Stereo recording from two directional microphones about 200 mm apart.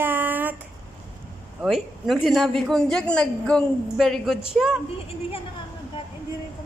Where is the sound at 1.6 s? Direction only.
Centre (ahead or behind).